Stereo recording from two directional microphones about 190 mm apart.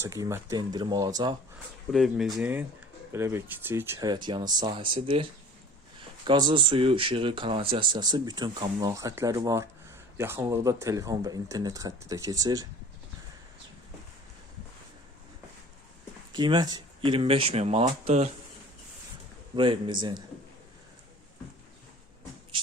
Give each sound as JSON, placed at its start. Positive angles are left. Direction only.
{"t": 0.0, "sound": "speech", "side_deg": -15}
{"t": 1.9, "sound": "speech", "side_deg": 0}
{"t": 6.2, "sound": "speech", "side_deg": -25}
{"t": 16.3, "sound": "speech", "side_deg": -25}
{"t": 19.5, "sound": "speech", "side_deg": -25}